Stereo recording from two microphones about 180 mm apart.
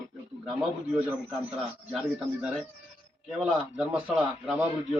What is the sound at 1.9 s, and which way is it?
A man's voice, 5° right (ahead or behind).